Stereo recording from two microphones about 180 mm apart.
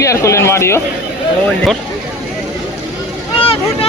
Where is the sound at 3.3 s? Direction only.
30° left (ahead or behind).